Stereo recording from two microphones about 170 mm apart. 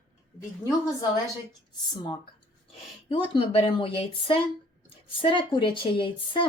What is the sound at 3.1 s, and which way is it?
Speech, 30° left (ahead or behind).